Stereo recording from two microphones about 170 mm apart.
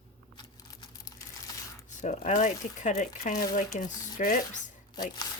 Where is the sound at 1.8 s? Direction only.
45° left (ahead or behind).